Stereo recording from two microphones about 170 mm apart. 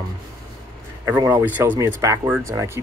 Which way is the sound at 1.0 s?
15° right (ahead or behind).